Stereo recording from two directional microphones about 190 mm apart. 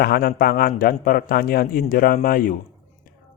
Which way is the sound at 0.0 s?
50° left (ahead or behind).